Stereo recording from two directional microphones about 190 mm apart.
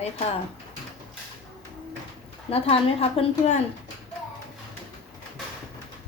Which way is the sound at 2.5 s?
30° left (ahead or behind).